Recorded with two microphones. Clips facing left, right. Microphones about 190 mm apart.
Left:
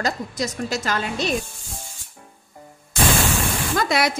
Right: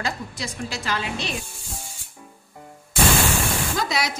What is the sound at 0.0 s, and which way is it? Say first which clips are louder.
A woman's voice: left 5 dB; 45° left (ahead or behind).